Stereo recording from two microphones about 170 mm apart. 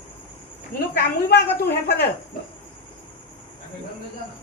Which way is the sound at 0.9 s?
70° left (ahead or behind).